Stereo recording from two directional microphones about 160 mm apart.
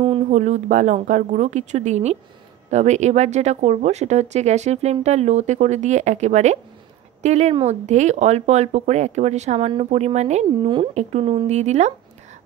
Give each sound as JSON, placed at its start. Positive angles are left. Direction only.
{"t": 0.3, "sound": "speech", "side_deg": -45}
{"t": 10.6, "sound": "speech", "side_deg": -30}